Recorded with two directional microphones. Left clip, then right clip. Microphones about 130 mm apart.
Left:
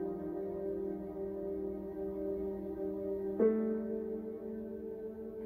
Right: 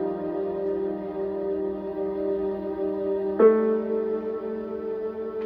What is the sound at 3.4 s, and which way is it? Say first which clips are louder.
Music: right 14 dB; 5° left (ahead or behind).